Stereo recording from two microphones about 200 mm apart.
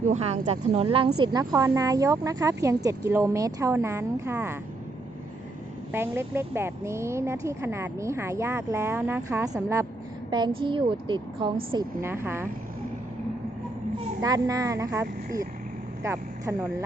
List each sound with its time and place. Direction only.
0.1 s a woman's voice: 35° right (ahead or behind); by 4.5 s 10° right (ahead or behind)
5.9 s a woman's voice: 10° right (ahead or behind)
14.2 s a woman's voice: 15° right (ahead or behind)
16.0 s speech: 15° right (ahead or behind)